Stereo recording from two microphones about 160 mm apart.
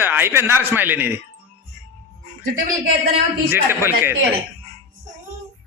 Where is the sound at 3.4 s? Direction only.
15° right (ahead or behind).